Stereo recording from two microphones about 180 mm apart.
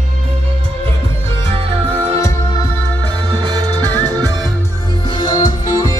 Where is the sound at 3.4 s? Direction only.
25° right (ahead or behind).